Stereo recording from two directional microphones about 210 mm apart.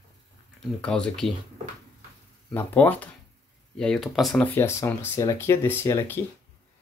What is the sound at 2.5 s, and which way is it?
Speech, 10° left (ahead or behind).